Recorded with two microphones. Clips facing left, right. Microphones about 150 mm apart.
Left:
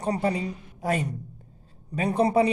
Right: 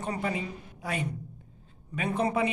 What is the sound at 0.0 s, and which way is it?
A woman's voice, 35° left (ahead or behind).